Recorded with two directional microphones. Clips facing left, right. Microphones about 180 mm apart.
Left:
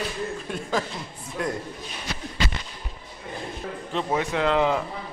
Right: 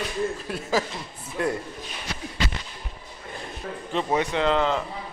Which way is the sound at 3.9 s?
Centre (ahead or behind).